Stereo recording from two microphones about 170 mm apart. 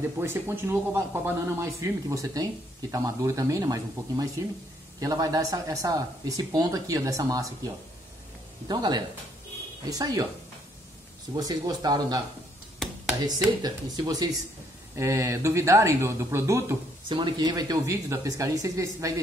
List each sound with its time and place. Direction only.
0.2 s speech: 15° right (ahead or behind)
11.3 s speech: 25° right (ahead or behind)
13.2 s speech: 25° right (ahead or behind)